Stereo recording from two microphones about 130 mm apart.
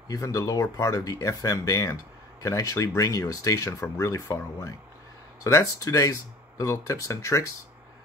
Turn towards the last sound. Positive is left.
turn(degrees=25)  # may be behind; listen again after turning